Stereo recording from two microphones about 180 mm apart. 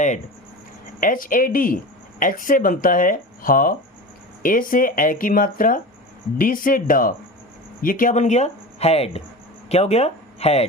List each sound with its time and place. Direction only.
0.9 s speech: 50° left (ahead or behind)